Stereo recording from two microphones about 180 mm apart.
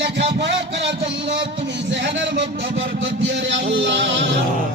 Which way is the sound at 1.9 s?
80° right.